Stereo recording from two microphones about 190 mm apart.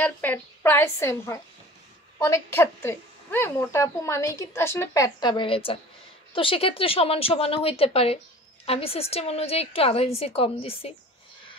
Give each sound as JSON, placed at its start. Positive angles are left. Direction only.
{"t": 0.0, "sound": "a woman's voice", "side_deg": 10}